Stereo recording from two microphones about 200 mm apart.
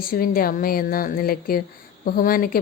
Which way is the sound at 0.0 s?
45° left (ahead or behind).